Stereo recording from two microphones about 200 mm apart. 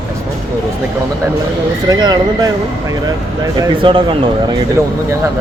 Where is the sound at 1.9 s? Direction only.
20° right (ahead or behind).